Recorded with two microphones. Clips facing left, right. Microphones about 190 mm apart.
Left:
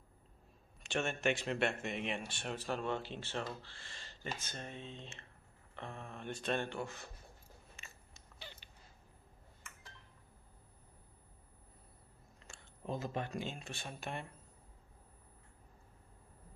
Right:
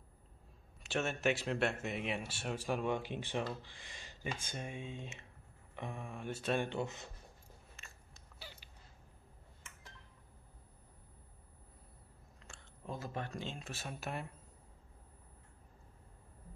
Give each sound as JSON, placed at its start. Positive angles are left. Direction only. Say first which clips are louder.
{"t": 0.8, "sound": "speech", "louder": "right 1 dB", "side_deg": -5}
{"t": 3.6, "sound": "a sound", "louder": "right 1 dB", "side_deg": -15}
{"t": 4.4, "sound": "speech", "louder": "right 3 dB", "side_deg": -10}
{"t": 6.7, "sound": "speech", "louder": "right 3 dB", "side_deg": -20}
{"t": 7.7, "sound": "biting", "louder": "even", "side_deg": 0}
{"t": 12.5, "sound": "a sound", "louder": "even", "side_deg": 0}
{"t": 12.8, "sound": "speech", "louder": "left 3 dB", "side_deg": 20}
{"t": 13.6, "sound": "speech", "louder": "right 1 dB", "side_deg": 0}